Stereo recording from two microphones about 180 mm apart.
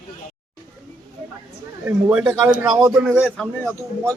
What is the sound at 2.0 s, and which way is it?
A man's voice, 5° right (ahead or behind).